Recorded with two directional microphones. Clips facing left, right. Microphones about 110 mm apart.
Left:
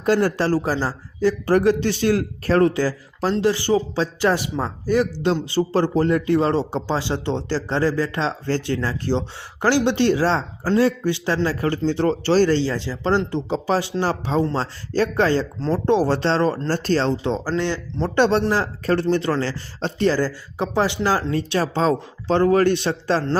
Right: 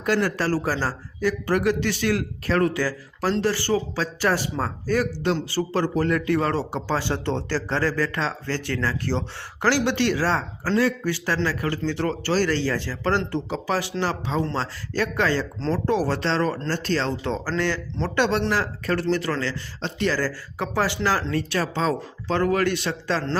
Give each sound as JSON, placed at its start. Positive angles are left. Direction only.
{"t": 0.0, "sound": "speech", "side_deg": 30}
{"t": 1.2, "sound": "speech", "side_deg": 30}
{"t": 17.2, "sound": "speech", "side_deg": 15}